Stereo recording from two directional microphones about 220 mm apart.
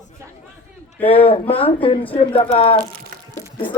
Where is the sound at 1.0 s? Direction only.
25° left (ahead or behind).